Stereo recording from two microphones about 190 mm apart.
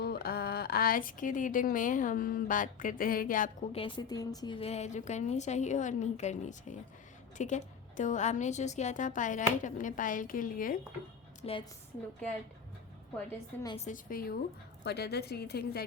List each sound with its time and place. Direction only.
0.0 s speech: 55° left (ahead or behind)
3.7 s a woman's voice: 25° left (ahead or behind); by 10.8 s 45° left (ahead or behind)
11.4 s a woman's voice: 30° left (ahead or behind)
13.1 s a woman's voice: 15° left (ahead or behind)
13.7 s a woman's voice: 40° left (ahead or behind); by 15.8 s 55° left (ahead or behind)